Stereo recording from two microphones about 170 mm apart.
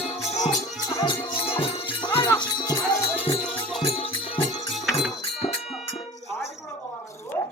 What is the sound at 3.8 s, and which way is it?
Music, 30° left (ahead or behind).